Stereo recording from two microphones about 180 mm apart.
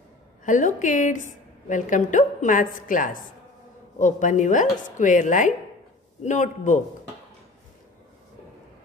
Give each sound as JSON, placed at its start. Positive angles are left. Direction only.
{"t": 0.5, "sound": "a woman's voice", "side_deg": 45}